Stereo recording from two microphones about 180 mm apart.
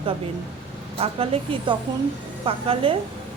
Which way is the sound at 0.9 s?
30° right (ahead or behind).